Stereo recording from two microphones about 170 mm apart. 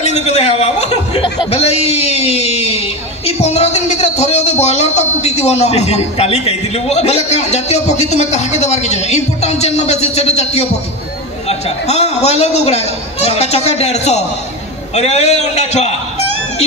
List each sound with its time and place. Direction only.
0.0 s a man's voice: 40° left (ahead or behind)